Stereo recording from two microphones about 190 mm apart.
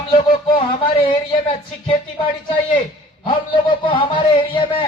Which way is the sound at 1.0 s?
30° left (ahead or behind).